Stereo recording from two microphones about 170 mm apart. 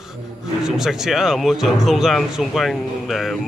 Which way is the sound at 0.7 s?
Centre (ahead or behind).